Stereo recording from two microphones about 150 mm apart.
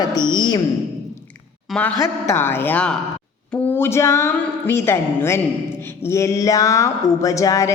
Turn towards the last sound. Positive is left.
turn(degrees=20)  # may be behind; listen again after turning